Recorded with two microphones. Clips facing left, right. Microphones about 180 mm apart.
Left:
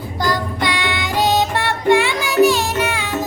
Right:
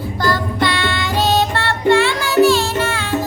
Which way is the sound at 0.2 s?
15° left (ahead or behind).